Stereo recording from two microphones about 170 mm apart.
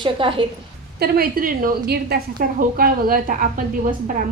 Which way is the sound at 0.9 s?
65° right (ahead or behind).